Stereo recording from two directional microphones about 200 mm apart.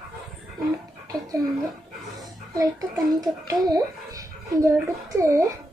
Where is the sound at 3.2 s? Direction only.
20° right (ahead or behind).